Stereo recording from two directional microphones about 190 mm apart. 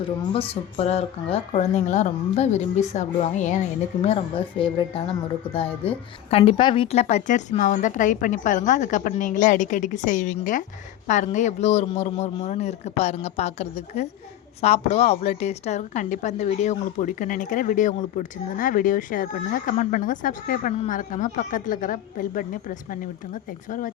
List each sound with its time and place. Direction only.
0.3 s a woman's voice: 30° left (ahead or behind)
4.0 s a woman's voice: 30° left (ahead or behind); by 22.4 s 45° left (ahead or behind)